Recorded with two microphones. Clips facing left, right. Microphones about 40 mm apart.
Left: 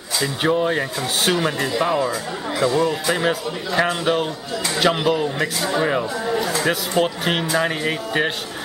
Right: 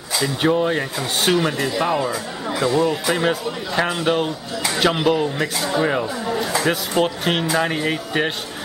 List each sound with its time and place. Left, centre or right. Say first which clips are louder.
0.2 s speech: right 1 dB; centre